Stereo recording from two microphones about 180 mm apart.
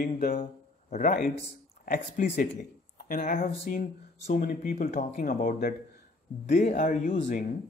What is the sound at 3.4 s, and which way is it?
Speech, 35° left (ahead or behind).